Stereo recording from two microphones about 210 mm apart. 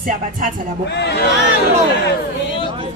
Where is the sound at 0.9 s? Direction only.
55° left (ahead or behind).